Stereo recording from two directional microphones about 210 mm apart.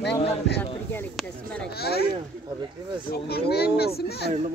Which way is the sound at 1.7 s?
50° left (ahead or behind).